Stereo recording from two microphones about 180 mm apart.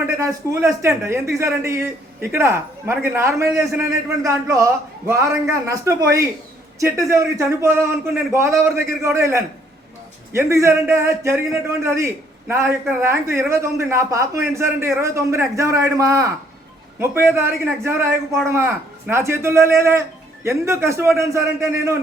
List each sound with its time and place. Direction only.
0.2 s a man's voice: 15° right (ahead or behind)
17.3 s a man's voice: 15° right (ahead or behind)